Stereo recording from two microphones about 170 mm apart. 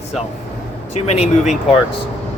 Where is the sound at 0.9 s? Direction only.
40° left (ahead or behind).